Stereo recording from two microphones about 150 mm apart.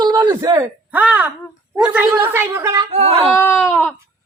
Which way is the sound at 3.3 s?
15° left (ahead or behind).